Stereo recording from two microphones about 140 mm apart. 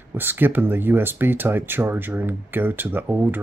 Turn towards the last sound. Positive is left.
turn(degrees=-15)  # may be behind; listen again after turning